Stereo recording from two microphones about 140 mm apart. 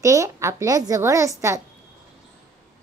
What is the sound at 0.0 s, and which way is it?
A woman's voice, 20° right (ahead or behind).